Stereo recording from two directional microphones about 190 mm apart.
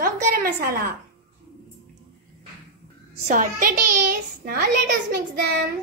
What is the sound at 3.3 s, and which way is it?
A child's voice, 45° right (ahead or behind).